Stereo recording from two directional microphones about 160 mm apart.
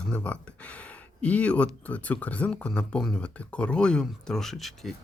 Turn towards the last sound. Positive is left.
turn(degrees=0)  # may be behind; listen again after turning